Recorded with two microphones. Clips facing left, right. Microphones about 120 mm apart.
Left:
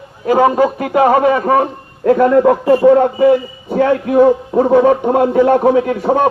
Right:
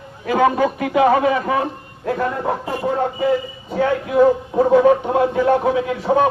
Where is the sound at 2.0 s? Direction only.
60° left (ahead or behind).